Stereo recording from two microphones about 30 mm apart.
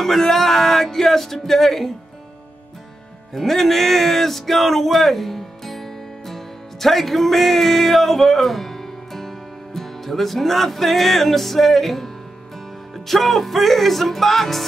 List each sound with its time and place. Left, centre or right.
0.0 s music: centre
3.3 s speech: centre
9.8 s music: centre